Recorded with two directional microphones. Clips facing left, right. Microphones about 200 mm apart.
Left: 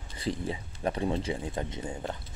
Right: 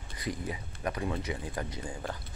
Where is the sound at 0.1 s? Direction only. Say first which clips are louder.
Left 4 dB; 30° left (ahead or behind).